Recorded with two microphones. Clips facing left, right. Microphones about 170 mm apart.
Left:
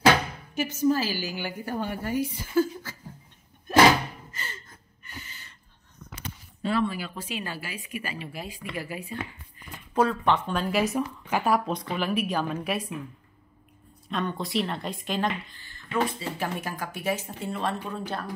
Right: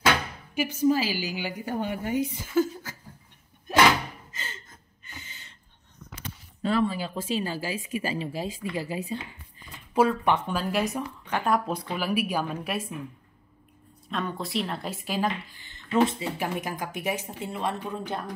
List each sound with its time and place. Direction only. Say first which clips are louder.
0.6 s speech: right 1 dB; 15° right (ahead or behind)
2.5 s a sound: left 1 dB; 20° right (ahead or behind)
4.3 s a sound: left 1 dB; 20° right (ahead or behind)
6.7 s speech: right 2 dB; 25° right (ahead or behind)
9.9 s speech: right 1 dB; 10° right (ahead or behind)
14.0 s speech: left 1 dB; centre (ahead or behind)
15.6 s speech: right 5 dB; 20° right (ahead or behind)